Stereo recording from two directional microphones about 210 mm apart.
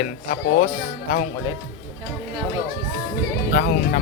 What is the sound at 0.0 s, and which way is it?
Speech, 40° left (ahead or behind).